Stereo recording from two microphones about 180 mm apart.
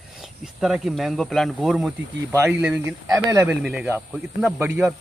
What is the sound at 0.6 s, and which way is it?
Speech, centre (ahead or behind).